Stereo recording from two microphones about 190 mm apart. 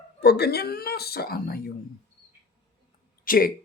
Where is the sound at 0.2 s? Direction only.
60° left (ahead or behind).